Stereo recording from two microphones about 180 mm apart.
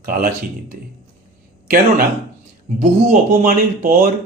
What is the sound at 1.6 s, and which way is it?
Speech, 55° right (ahead or behind).